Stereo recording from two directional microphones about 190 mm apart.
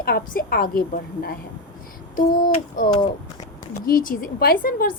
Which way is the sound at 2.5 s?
45° left (ahead or behind).